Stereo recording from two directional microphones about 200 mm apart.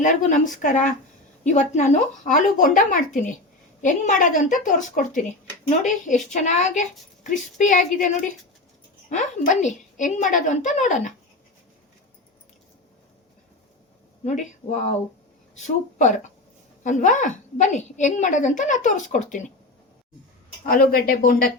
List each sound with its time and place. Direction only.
0.0 s a woman's voice: 40° left (ahead or behind)
9.0 s a woman's voice: 40° left (ahead or behind)
14.3 s a woman's voice: 35° left (ahead or behind)
20.7 s speech: 45° left (ahead or behind)